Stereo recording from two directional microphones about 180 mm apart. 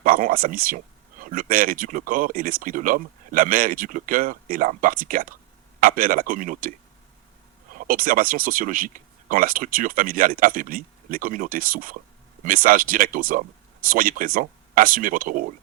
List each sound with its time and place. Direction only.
0.0 s speech: 50° right (ahead or behind)